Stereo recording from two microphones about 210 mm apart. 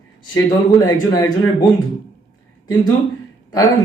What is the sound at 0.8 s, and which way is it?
Speech, 20° left (ahead or behind).